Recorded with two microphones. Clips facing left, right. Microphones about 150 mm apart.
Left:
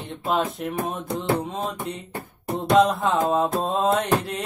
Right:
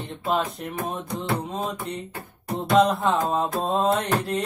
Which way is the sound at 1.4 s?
Centre (ahead or behind).